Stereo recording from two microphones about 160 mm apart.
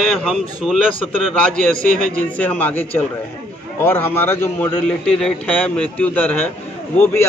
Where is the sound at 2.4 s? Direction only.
10° left (ahead or behind).